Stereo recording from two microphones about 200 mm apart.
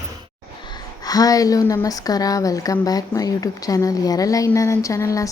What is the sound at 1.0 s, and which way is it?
Speech, 20° left (ahead or behind).